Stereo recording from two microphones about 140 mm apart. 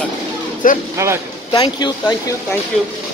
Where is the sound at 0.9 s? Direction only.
20° right (ahead or behind).